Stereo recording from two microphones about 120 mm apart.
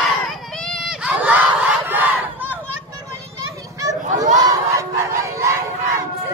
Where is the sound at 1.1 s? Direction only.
10° right (ahead or behind).